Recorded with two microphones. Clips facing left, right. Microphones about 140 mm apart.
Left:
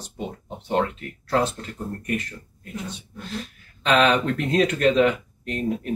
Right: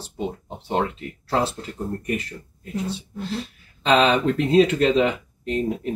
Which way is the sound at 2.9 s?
30° right (ahead or behind).